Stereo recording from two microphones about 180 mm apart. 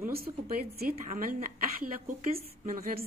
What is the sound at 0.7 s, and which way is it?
A woman's voice, 50° right (ahead or behind).